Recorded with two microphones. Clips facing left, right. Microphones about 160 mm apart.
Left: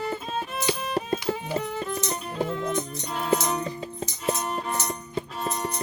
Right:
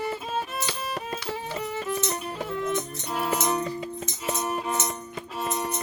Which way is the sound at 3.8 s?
35° left (ahead or behind).